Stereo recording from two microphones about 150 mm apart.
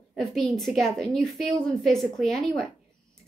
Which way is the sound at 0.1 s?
Centre (ahead or behind).